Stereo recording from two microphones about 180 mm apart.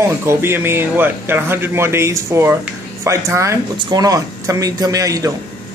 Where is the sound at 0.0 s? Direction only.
15° right (ahead or behind).